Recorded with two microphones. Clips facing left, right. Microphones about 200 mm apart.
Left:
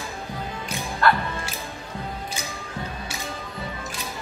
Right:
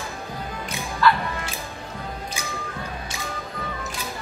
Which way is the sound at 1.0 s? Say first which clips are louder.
Right 1 dB; 55° left (ahead or behind).